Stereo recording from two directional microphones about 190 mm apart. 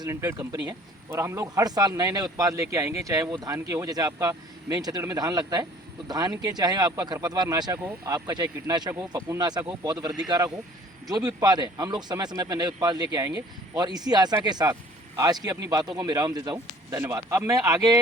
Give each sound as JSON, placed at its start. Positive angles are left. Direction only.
{"t": 0.0, "sound": "speech", "side_deg": -15}